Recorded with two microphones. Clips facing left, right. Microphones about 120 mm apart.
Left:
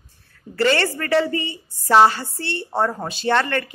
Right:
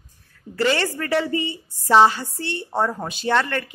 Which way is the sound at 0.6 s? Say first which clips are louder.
Left 2 dB; 5° right (ahead or behind).